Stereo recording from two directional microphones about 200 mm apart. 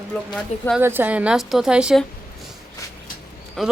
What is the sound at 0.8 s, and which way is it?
Speech, 10° right (ahead or behind).